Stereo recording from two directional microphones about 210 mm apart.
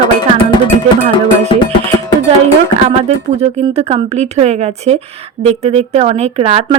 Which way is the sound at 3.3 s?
30° right (ahead or behind).